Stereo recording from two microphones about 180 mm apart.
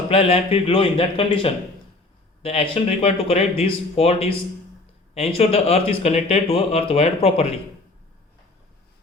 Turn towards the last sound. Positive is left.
turn(degrees=35)  # may be behind; listen again after turning